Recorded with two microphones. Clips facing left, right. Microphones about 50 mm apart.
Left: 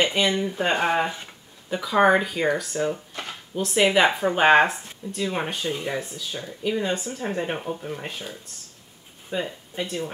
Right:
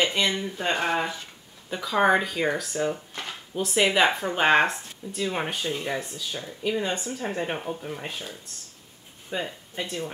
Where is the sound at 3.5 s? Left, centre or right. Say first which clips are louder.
Left 3 dB; centre.